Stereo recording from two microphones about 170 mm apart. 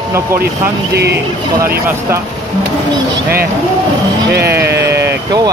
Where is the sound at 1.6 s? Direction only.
15° right (ahead or behind).